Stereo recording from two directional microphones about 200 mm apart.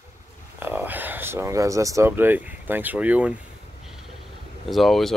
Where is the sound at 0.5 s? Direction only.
10° right (ahead or behind).